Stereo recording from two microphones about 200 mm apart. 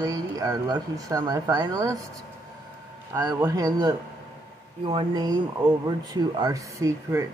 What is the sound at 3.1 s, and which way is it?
Speech, 15° right (ahead or behind).